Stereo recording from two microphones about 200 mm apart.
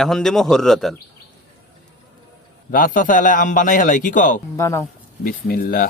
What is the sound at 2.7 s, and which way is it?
A man's voice, 45° left (ahead or behind).